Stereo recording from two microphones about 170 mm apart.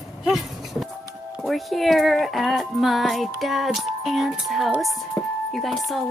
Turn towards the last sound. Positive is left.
turn(degrees=0)  # may be behind; listen again after turning